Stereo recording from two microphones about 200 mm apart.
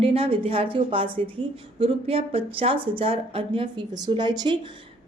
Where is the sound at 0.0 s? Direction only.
30° right (ahead or behind).